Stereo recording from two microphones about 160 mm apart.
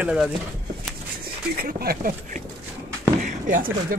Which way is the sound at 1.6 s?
70° right (ahead or behind).